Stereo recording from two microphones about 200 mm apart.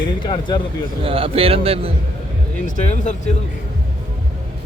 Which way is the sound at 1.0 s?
30° right (ahead or behind).